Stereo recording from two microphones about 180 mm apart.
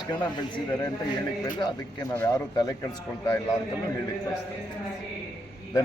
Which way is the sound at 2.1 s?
15° left (ahead or behind).